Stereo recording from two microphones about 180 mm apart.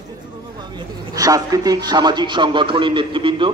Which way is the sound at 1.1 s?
20° right (ahead or behind).